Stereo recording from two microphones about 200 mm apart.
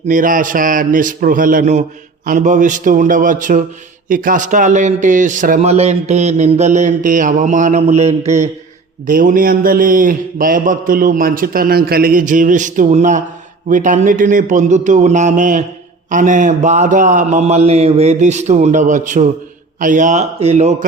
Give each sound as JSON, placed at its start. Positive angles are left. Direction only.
{"t": 0.1, "sound": "a man's voice", "side_deg": -40}